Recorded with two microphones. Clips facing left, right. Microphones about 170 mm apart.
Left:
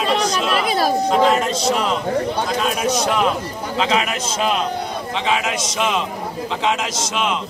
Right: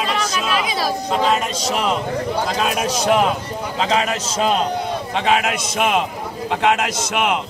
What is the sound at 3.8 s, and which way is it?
Speech, 35° right (ahead or behind).